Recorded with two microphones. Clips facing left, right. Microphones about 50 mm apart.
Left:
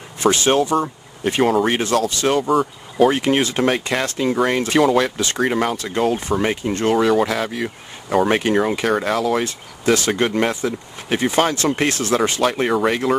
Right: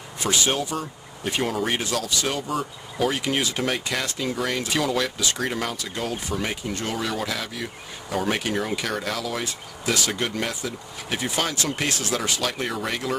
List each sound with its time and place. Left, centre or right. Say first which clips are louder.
0.2 s speech: left 8 dB; left